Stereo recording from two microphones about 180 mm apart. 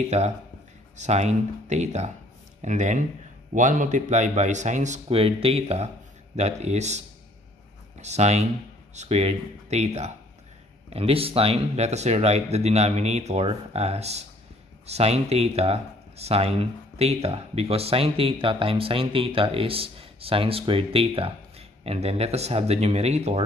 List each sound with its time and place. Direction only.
0.1 s speech: 40° right (ahead or behind)
8.0 s speech: 40° right (ahead or behind)